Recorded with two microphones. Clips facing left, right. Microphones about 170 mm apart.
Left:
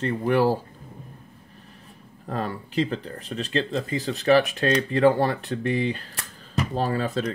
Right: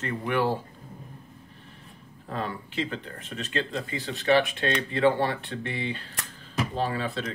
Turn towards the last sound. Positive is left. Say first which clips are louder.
# left 4 dB
turn(degrees=40)  # may be behind; listen again after turning